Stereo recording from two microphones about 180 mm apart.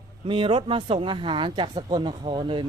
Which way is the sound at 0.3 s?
30° right (ahead or behind).